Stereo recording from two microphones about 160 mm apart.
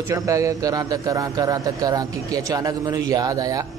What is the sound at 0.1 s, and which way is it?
Speech, 20° right (ahead or behind).